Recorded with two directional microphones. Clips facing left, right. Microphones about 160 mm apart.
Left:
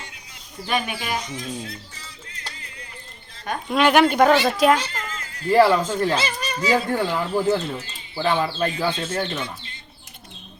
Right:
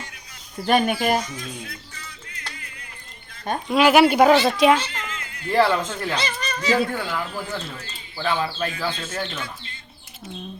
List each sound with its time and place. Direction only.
0.7 s speech: 45° right (ahead or behind)
1.3 s speech: 25° left (ahead or behind)
3.7 s speech: 5° right (ahead or behind)
4.9 s a sound: 40° left (ahead or behind)
5.7 s speech: 35° left (ahead or behind)
6.1 s speech: 10° left (ahead or behind)
6.9 s speech: 30° left (ahead or behind)